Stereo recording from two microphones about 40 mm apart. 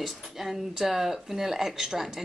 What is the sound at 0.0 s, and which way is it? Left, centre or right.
Speech, centre.